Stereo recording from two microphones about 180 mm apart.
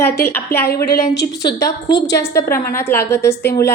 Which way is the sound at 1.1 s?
70° left (ahead or behind).